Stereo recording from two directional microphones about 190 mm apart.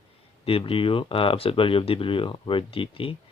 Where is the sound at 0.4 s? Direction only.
30° left (ahead or behind).